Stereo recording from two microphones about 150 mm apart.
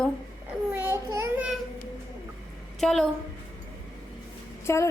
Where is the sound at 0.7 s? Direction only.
15° right (ahead or behind).